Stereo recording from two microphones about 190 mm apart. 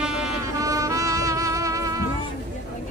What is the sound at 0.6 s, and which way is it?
Music, 15° right (ahead or behind).